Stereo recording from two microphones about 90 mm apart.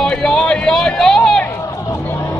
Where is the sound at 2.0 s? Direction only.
30° left (ahead or behind).